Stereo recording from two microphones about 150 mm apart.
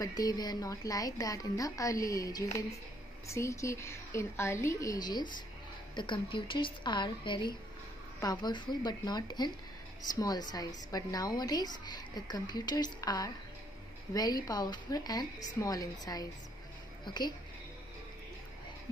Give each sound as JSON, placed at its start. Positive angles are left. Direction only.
{"t": 0.0, "sound": "a woman's voice", "side_deg": 25}